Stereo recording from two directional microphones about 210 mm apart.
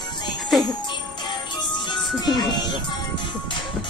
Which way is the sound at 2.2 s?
20° left (ahead or behind).